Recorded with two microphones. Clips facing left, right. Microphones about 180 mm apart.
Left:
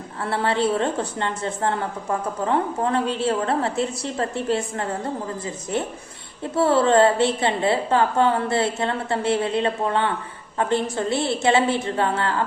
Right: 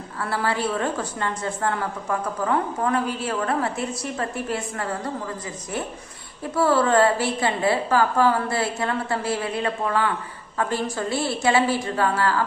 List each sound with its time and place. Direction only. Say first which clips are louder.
0.2 s a woman's voice: left 3 dB; 25° left (ahead or behind)
6.4 s a woman's voice: left 2 dB; 25° left (ahead or behind)